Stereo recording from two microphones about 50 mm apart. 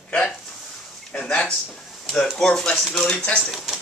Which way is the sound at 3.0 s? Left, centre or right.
Centre.